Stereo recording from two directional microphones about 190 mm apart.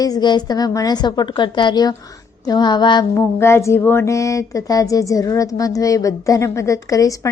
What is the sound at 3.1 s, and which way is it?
Music, 15° left (ahead or behind).